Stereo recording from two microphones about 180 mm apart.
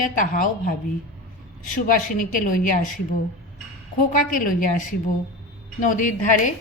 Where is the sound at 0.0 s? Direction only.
50° left (ahead or behind).